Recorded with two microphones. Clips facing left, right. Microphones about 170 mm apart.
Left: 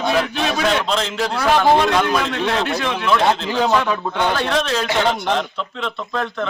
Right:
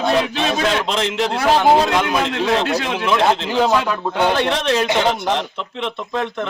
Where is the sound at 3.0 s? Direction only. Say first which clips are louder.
Even; 20° right (ahead or behind).